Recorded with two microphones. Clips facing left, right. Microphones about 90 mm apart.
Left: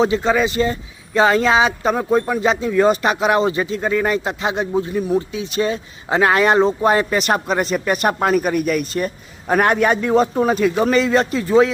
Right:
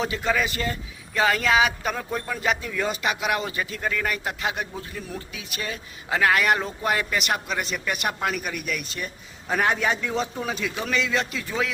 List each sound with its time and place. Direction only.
0.0 s speech: 25° left (ahead or behind)
2.7 s speech: 40° left (ahead or behind)